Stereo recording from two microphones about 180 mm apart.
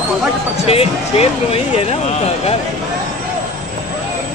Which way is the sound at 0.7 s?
35° left (ahead or behind).